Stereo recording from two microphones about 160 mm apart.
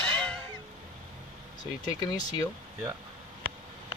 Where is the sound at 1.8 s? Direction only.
25° left (ahead or behind).